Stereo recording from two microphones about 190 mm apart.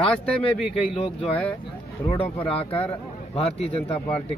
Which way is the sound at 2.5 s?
30° left (ahead or behind).